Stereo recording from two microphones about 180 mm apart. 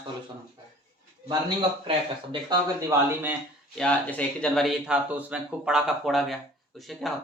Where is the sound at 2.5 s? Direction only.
15° right (ahead or behind).